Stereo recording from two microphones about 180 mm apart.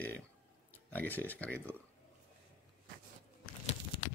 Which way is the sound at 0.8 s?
10° left (ahead or behind).